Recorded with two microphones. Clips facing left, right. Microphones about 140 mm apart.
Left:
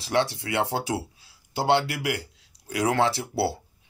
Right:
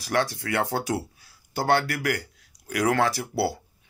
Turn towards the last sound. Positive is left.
turn(degrees=25)  # may be behind; listen again after turning